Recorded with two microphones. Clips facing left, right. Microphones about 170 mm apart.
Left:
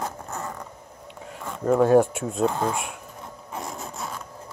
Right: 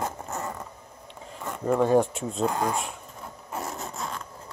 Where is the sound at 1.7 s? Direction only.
5° left (ahead or behind).